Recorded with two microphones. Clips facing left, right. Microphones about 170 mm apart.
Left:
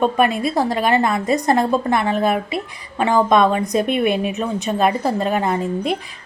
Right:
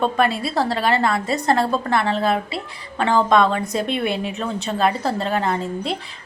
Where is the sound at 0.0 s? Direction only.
15° left (ahead or behind).